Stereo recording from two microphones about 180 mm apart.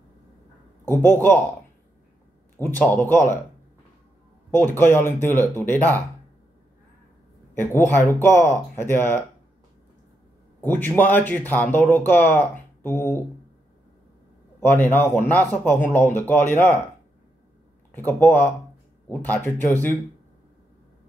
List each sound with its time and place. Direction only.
0.8 s speech: 15° left (ahead or behind)
2.5 s speech: 10° left (ahead or behind)
4.6 s speech: 15° left (ahead or behind)
7.5 s speech: 15° left (ahead or behind)
10.6 s speech: 10° left (ahead or behind)
14.6 s speech: 10° left (ahead or behind)
17.9 s speech: 15° left (ahead or behind)